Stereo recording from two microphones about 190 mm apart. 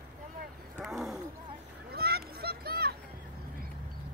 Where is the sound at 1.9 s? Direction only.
55° right (ahead or behind).